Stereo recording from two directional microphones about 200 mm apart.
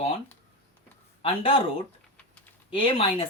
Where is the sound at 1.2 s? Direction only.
30° left (ahead or behind).